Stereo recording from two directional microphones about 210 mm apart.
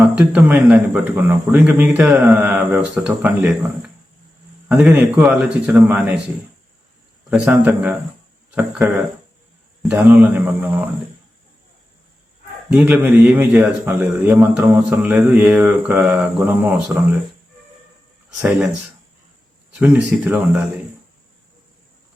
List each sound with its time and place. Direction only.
0.0 s a man's voice: 5° right (ahead or behind)
7.3 s a man's voice: 5° right (ahead or behind)
12.7 s a man's voice: 10° right (ahead or behind)
19.7 s a man's voice: 5° right (ahead or behind)